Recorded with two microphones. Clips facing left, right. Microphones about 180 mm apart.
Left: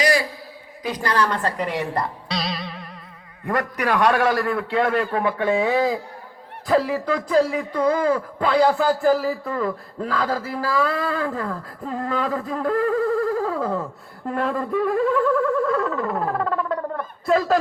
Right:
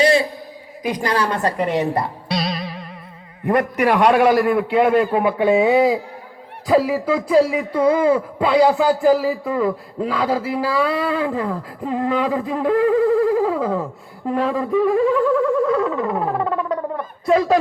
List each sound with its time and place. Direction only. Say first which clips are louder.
0.0 s a sound: right 5 dB; 25° right (ahead or behind)
0.8 s a man's voice: right 2 dB; 15° right (ahead or behind)
3.4 s a man's voice: right 6 dB; 20° right (ahead or behind); by 16.1 s 5° right (ahead or behind)
16.1 s music: right 2 dB; 10° right (ahead or behind)
17.2 s speech: right 3 dB; centre (ahead or behind)